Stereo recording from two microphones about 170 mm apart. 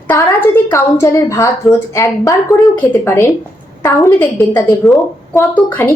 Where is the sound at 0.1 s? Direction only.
15° left (ahead or behind).